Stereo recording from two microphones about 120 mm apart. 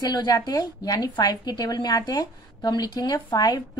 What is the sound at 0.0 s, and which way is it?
A woman's voice, 35° left (ahead or behind).